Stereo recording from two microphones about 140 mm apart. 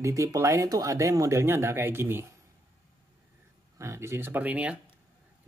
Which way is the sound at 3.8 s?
20° right (ahead or behind).